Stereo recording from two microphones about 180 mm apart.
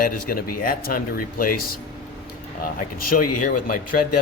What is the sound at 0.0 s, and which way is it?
Speech, 55° left (ahead or behind).